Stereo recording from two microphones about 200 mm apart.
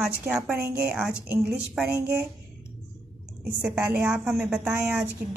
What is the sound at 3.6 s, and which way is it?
A woman's voice, 10° right (ahead or behind).